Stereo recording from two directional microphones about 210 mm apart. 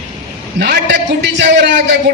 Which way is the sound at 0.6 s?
50° right (ahead or behind).